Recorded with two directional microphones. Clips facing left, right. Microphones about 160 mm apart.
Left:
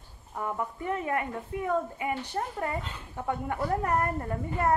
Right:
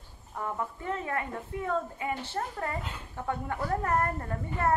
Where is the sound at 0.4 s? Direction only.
15° left (ahead or behind).